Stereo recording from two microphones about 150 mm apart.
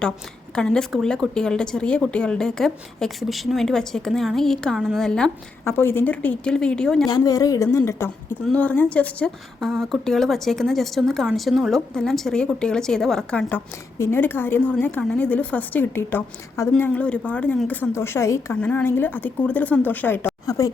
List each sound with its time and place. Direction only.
0.5 s a woman's voice: 5° left (ahead or behind)
5.6 s a woman's voice: 15° left (ahead or behind)
7.1 s a woman's voice: 25° left (ahead or behind)